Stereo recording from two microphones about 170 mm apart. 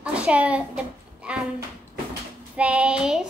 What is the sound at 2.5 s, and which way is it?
Speech, 5° right (ahead or behind).